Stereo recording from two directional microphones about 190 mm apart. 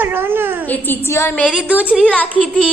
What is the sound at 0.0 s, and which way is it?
Speech, 10° right (ahead or behind).